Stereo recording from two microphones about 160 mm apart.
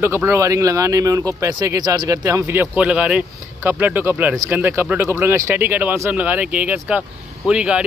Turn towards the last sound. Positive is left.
turn(degrees=-5)  # may be behind; listen again after turning